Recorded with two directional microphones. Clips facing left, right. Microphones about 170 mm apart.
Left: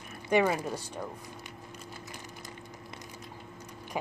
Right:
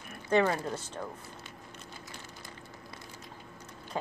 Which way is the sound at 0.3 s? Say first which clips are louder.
Left 1 dB; 10° left (ahead or behind).